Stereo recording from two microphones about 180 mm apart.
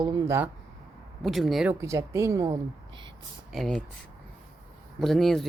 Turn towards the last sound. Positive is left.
turn(degrees=0)  # may be behind; listen again after turning